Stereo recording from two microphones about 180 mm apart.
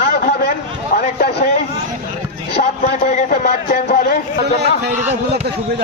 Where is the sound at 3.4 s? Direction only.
55° left (ahead or behind).